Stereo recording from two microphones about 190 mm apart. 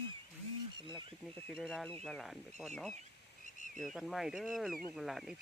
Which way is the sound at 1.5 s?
Centre (ahead or behind).